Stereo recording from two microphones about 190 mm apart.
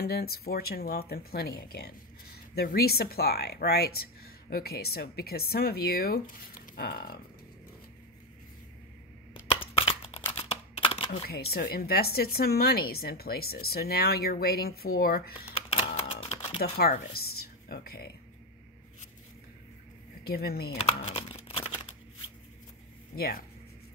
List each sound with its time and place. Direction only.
0.0 s speech: 55° left (ahead or behind)
9.8 s a sound: 30° left (ahead or behind)
11.5 s speech: 55° left (ahead or behind)
15.5 s camera: 30° left (ahead or behind)
16.7 s speech: 55° left (ahead or behind)
20.2 s speech: 55° left (ahead or behind)
21.1 s a sound: 30° left (ahead or behind)
23.1 s speech: 50° left (ahead or behind)